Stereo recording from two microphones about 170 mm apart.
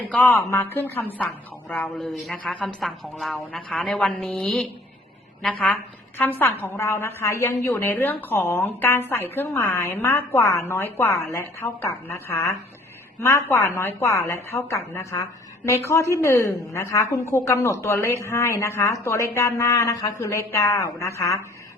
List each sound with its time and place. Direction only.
0.1 s a woman's voice: 5° left (ahead or behind)